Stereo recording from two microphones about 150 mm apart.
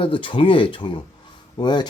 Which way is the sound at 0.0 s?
35° left (ahead or behind).